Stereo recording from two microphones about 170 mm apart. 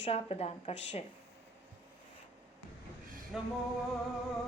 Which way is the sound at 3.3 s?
5° right (ahead or behind).